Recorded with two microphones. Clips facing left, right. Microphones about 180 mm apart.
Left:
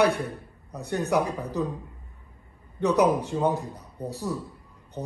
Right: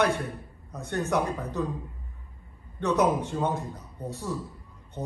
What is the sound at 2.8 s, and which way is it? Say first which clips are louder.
Speech: left 3 dB; 35° left (ahead or behind).